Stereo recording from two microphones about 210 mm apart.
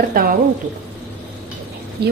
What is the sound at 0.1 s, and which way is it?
Speech, 45° right (ahead or behind).